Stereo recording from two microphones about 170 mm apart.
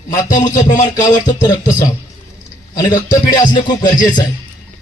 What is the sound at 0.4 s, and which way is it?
Speech, 20° left (ahead or behind).